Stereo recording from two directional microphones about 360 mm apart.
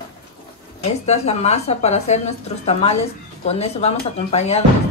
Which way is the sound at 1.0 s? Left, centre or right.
Centre.